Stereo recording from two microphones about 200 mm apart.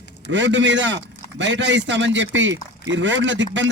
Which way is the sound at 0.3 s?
65° right (ahead or behind).